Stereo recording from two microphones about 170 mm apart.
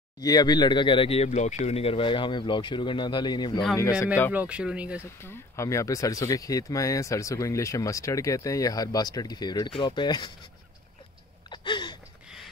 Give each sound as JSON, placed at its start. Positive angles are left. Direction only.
{"t": 0.2, "sound": "speech", "side_deg": 25}
{"t": 4.3, "sound": "speech", "side_deg": -10}
{"t": 5.2, "sound": "speech", "side_deg": 15}
{"t": 11.5, "sound": "a sound", "side_deg": 25}